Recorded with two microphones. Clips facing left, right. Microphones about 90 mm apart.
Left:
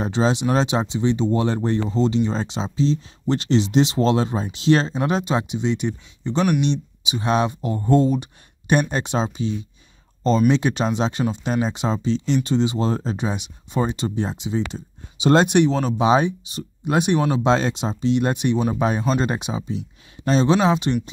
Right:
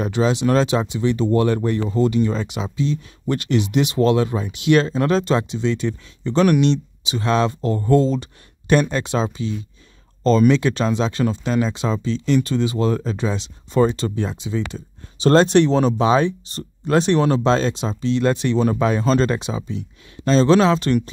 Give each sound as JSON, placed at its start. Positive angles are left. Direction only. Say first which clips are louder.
{"t": 0.0, "sound": "speech", "louder": "right 1 dB", "side_deg": 25}
{"t": 15.1, "sound": "speech", "louder": "right 2 dB", "side_deg": 15}
{"t": 17.5, "sound": "speech", "louder": "right 1 dB", "side_deg": 20}